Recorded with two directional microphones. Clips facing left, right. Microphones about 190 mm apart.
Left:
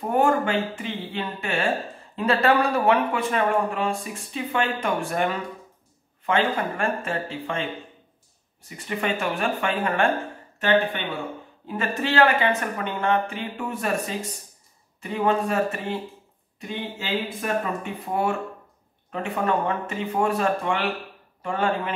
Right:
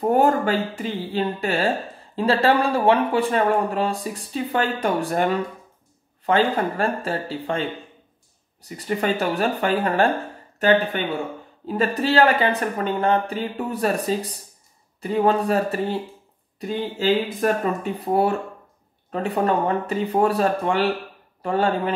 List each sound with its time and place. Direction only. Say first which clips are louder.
0.1 s speech: right 1 dB; 35° right (ahead or behind)
8.6 s speech: right 4 dB; 35° right (ahead or behind)
11.6 s speech: right 5 dB; 35° right (ahead or behind)